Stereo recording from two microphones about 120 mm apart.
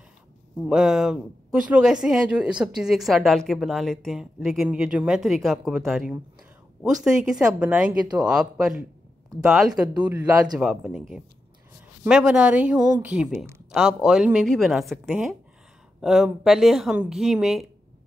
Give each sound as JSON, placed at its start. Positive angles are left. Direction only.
{"t": 0.7, "sound": "speech", "side_deg": -5}
{"t": 12.7, "sound": "speech", "side_deg": -35}
{"t": 13.0, "sound": "speech", "side_deg": -10}